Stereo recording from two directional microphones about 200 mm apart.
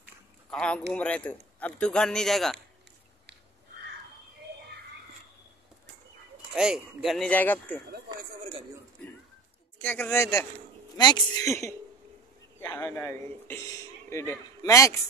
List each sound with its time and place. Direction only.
0.5 s a man's voice: 5° left (ahead or behind)
6.5 s speech: 5° right (ahead or behind)
9.8 s a man's voice: 10° left (ahead or behind)